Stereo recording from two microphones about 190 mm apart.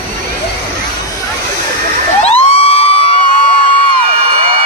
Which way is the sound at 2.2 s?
30° left (ahead or behind).